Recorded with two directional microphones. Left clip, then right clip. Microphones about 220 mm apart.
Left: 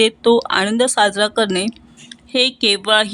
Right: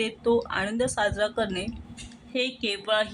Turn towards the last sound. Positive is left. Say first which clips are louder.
# left 11 dB
turn(degrees=40)  # may be behind; listen again after turning